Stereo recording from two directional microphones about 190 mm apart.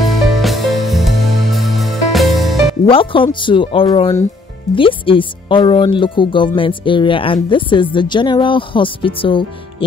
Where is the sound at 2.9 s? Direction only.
25° left (ahead or behind).